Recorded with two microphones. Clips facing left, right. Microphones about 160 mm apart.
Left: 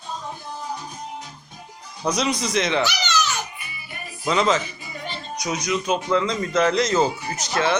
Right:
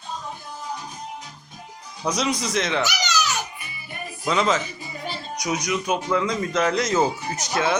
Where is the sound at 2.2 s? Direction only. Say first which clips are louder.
Left 1 dB; 10° right (ahead or behind).